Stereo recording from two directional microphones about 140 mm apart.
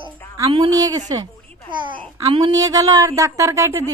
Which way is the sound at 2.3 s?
25° right (ahead or behind).